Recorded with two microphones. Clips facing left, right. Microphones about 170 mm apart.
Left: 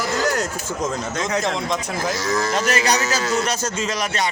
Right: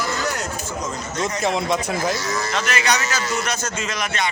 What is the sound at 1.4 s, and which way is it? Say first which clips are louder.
Speech: right 2 dB; 5° right (ahead or behind).